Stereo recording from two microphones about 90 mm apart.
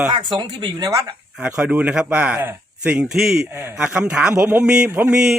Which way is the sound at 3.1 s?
5° right (ahead or behind).